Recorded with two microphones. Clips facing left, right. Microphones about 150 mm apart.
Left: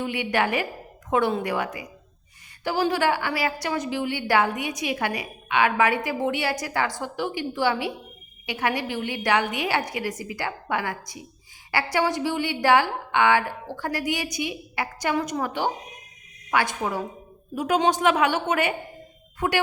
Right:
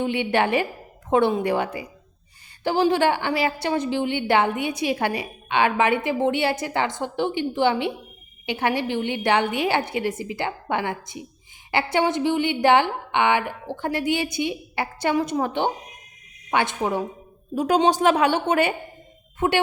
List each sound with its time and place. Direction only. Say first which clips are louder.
0.0 s a woman's voice: right 3 dB; 25° right (ahead or behind)
2.9 s a woman's voice: right 3 dB; 25° right (ahead or behind)